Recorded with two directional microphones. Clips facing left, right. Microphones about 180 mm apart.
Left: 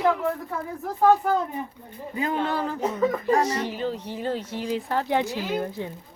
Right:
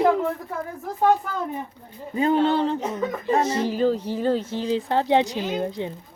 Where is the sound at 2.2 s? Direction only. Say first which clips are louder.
Right 6 dB; 30° right (ahead or behind).